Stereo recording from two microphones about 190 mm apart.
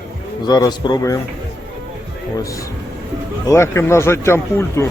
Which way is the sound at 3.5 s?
15° left (ahead or behind).